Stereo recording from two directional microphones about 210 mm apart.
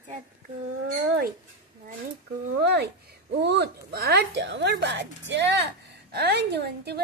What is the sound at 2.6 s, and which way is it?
A child's voice, 50° right (ahead or behind).